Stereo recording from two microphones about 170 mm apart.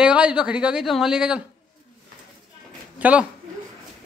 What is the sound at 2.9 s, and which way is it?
Speech, 10° right (ahead or behind).